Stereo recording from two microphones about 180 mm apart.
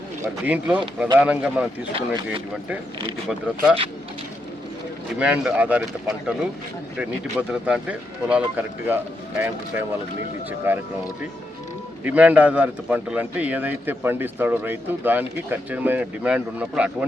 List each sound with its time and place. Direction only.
0.2 s speech: 10° right (ahead or behind)
1.9 s speech: 30° right (ahead or behind)
3.2 s speech: 5° right (ahead or behind)
5.2 s speech: 5° right (ahead or behind)
12.0 s speech: 10° right (ahead or behind)